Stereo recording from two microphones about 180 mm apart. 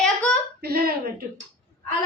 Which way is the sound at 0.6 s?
60° right (ahead or behind).